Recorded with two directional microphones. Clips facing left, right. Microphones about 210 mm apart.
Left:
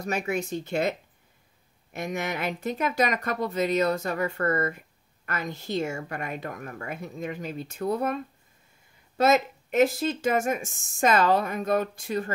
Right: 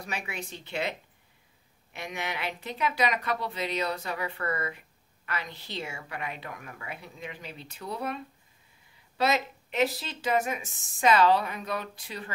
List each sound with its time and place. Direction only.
0.0 s speech: 45° left (ahead or behind)